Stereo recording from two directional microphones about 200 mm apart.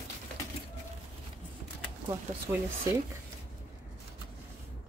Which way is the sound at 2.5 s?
10° right (ahead or behind).